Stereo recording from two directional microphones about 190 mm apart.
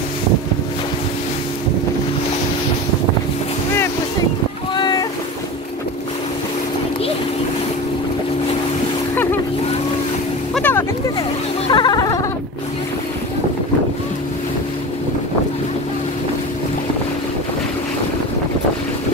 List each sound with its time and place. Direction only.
4.7 s boat: 25° left (ahead or behind)
9.1 s splash: 10° left (ahead or behind)
10.5 s vehicle: 10° left (ahead or behind)
11.7 s music: 20° left (ahead or behind)